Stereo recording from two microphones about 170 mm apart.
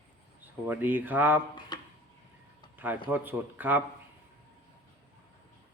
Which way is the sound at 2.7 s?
10° right (ahead or behind).